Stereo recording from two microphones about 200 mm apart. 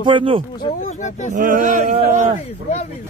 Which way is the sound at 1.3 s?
40° right (ahead or behind).